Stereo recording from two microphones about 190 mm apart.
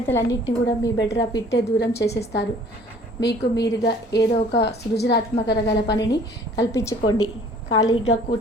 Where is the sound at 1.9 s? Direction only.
60° left (ahead or behind).